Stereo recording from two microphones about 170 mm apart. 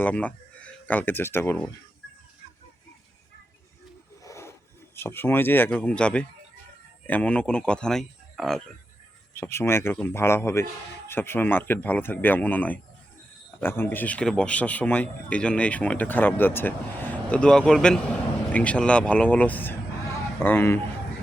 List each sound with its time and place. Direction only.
0.0 s speech: 10° left (ahead or behind)
4.2 s a sound: 15° left (ahead or behind)
4.9 s a man's voice: 15° left (ahead or behind)
9.3 s a man's voice: 15° left (ahead or behind)